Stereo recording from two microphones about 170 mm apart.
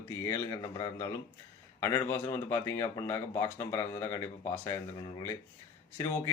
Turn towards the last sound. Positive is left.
turn(degrees=15)  # may be behind; listen again after turning